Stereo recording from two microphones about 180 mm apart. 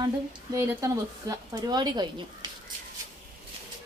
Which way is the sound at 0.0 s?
15° right (ahead or behind).